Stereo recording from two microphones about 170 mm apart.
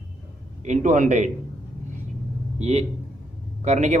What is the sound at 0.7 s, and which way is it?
Speech, 45° right (ahead or behind).